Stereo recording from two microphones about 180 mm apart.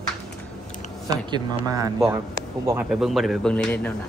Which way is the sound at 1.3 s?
20° right (ahead or behind).